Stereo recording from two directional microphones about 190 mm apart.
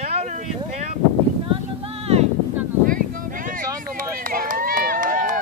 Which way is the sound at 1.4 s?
30° right (ahead or behind).